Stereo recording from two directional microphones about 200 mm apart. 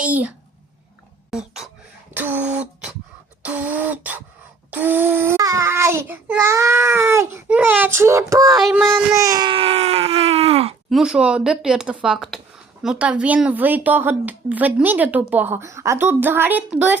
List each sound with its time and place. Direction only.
0.0 s a child's voice: 5° right (ahead or behind)
1.3 s beatboxing: 5° right (ahead or behind)
4.7 s child singing: 10° right (ahead or behind)
8.5 s speech: centre (ahead or behind); by 10.8 s 30° right (ahead or behind)
10.8 s a woman's voice: centre (ahead or behind)